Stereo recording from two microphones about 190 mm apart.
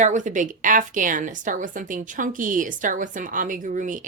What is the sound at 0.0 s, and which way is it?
A woman's voice, 40° right (ahead or behind).